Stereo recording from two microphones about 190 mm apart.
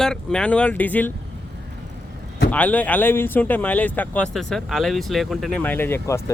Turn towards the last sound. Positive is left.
turn(degrees=15)  # may be behind; listen again after turning